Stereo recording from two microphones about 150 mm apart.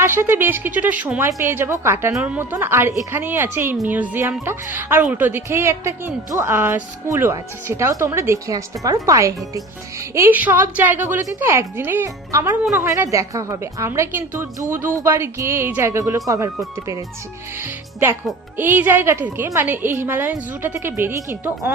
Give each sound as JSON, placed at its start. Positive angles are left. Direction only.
{"t": 0.0, "sound": "speech", "side_deg": -15}
{"t": 17.6, "sound": "speech", "side_deg": -15}